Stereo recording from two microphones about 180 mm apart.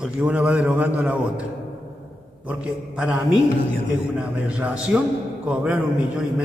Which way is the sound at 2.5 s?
5° right (ahead or behind).